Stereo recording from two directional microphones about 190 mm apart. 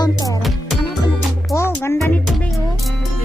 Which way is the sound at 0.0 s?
20° left (ahead or behind).